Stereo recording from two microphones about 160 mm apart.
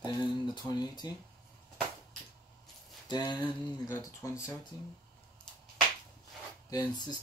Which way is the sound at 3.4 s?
15° left (ahead or behind).